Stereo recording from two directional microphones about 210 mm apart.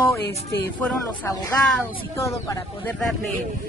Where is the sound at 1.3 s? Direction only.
15° left (ahead or behind).